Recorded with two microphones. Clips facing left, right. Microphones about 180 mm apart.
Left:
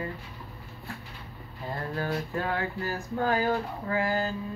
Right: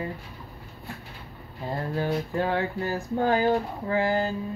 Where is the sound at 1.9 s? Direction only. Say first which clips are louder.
Right 4 dB; 20° right (ahead or behind).